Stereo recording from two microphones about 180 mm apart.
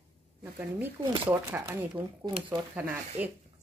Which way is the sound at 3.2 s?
10° right (ahead or behind).